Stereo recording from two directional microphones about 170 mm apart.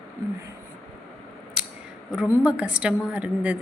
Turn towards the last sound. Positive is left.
turn(degrees=-10)  # may be behind; listen again after turning